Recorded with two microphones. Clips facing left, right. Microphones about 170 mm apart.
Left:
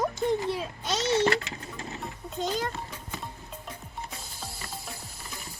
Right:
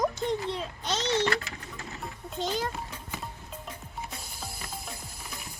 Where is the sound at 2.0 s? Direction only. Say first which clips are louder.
Even; centre (ahead or behind).